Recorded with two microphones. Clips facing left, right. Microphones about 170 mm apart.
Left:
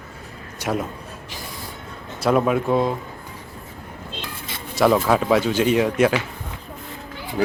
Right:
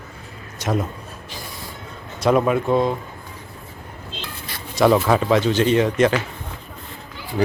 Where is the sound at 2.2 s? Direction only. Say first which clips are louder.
Right 1 dB; centre (ahead or behind).